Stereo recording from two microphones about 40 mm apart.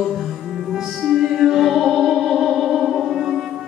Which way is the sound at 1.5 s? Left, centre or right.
Centre.